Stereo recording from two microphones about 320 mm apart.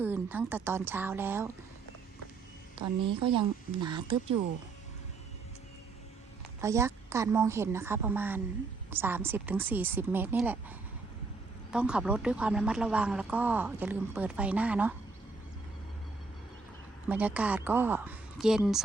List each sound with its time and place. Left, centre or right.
0.0 s a woman's voice: centre
2.7 s a woman's voice: centre
6.6 s a woman's voice: centre
17.1 s speech: centre